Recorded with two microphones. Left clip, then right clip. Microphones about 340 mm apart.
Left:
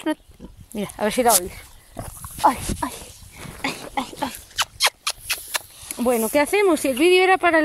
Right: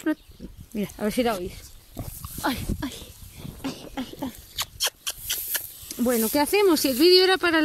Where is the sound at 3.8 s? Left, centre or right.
Left.